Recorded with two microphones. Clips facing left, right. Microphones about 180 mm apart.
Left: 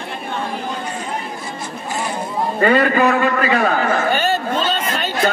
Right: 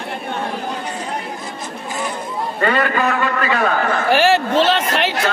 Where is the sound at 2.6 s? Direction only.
40° left (ahead or behind).